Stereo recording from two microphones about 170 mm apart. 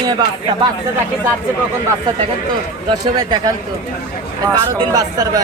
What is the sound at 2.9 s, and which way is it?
Speech, 25° right (ahead or behind).